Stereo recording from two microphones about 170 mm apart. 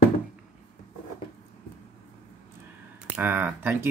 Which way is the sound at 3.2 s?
10° right (ahead or behind).